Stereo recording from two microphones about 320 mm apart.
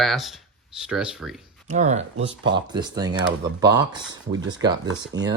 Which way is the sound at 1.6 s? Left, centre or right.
Right.